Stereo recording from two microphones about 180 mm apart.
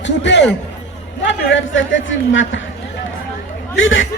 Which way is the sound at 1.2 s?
90° left.